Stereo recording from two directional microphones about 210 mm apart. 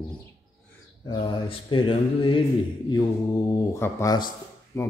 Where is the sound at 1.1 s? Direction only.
25° left (ahead or behind).